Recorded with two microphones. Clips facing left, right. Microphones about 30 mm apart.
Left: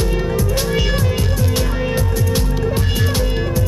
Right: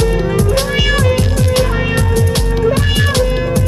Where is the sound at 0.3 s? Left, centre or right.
Right.